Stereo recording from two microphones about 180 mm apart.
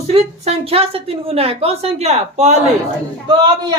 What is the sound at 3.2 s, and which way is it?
Speech, 25° right (ahead or behind).